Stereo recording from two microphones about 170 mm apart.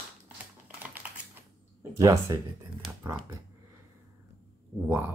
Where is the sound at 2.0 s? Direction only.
20° right (ahead or behind).